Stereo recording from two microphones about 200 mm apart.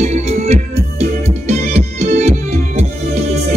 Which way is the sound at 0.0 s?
35° right (ahead or behind).